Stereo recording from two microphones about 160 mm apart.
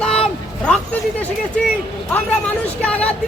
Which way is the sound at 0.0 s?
5° left (ahead or behind).